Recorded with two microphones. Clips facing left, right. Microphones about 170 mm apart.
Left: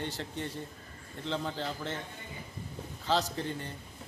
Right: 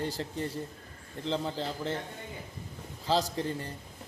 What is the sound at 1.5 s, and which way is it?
Speech, 35° right (ahead or behind).